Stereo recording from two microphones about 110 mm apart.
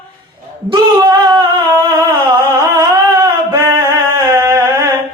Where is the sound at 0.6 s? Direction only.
50° right (ahead or behind).